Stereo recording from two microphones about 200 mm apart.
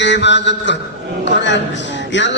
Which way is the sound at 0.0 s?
60° left (ahead or behind).